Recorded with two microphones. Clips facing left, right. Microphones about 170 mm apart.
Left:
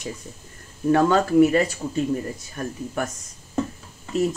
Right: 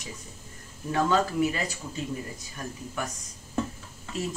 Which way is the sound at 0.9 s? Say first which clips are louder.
Left 7 dB; 55° left (ahead or behind).